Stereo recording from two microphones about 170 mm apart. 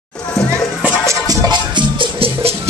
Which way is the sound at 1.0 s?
20° right (ahead or behind).